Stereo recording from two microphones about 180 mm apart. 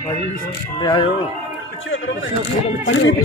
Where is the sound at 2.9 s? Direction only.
90° left.